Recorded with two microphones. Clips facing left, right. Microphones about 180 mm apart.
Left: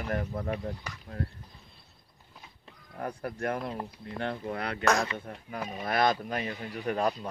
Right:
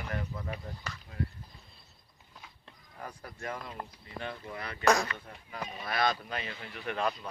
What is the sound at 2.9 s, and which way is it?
Speech, 60° left (ahead or behind).